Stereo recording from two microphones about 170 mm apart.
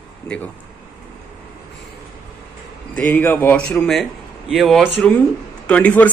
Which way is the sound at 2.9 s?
10° left (ahead or behind).